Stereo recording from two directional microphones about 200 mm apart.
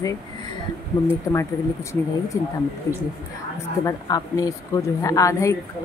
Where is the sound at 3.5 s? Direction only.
15° left (ahead or behind).